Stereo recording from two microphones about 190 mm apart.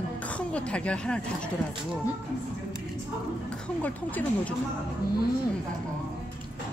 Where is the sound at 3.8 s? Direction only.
10° left (ahead or behind).